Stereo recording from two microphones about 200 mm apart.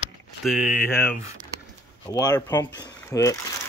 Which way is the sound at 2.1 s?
20° left (ahead or behind).